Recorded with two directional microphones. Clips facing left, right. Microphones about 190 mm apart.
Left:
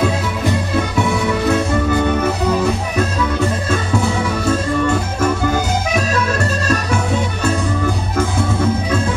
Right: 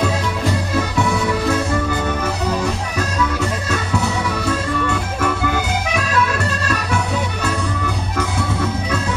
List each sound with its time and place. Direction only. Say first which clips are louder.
4.5 s music: left 6 dB; 45° left (ahead or behind)